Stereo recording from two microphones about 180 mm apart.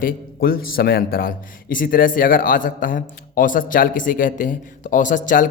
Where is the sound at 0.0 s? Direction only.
55° left (ahead or behind).